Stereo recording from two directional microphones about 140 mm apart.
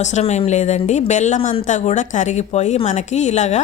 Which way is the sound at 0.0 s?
55° left (ahead or behind).